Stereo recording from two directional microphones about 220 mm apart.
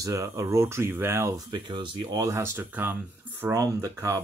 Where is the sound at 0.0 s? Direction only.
15° right (ahead or behind).